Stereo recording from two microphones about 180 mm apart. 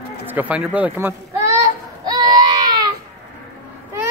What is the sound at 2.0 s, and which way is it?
Baby cry, 20° right (ahead or behind).